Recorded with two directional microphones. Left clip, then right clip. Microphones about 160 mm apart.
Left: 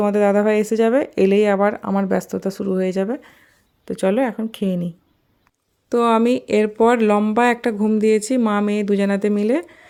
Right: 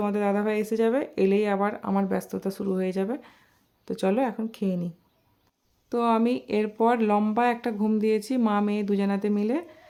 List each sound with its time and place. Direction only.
0.0 s a woman's voice: 40° left (ahead or behind)
5.9 s a woman's voice: 25° left (ahead or behind)